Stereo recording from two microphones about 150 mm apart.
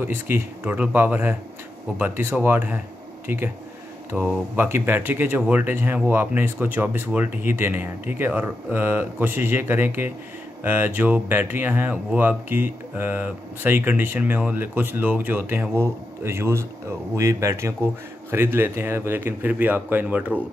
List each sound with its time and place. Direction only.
0.0 s speech: 15° right (ahead or behind)